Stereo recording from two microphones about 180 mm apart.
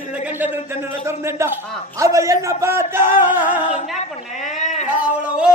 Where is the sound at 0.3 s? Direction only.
10° right (ahead or behind).